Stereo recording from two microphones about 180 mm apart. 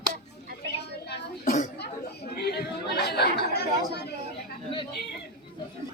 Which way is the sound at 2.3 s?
60° left (ahead or behind).